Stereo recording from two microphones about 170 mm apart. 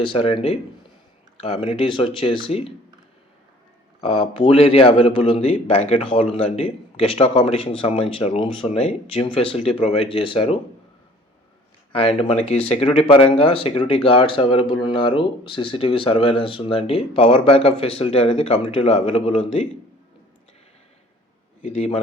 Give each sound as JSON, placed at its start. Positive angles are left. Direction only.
{"t": 0.0, "sound": "speech", "side_deg": 30}
{"t": 4.0, "sound": "speech", "side_deg": 35}
{"t": 11.9, "sound": "speech", "side_deg": 30}
{"t": 21.6, "sound": "speech", "side_deg": 40}